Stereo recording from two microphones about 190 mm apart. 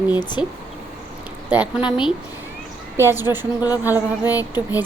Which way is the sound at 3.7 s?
10° right (ahead or behind).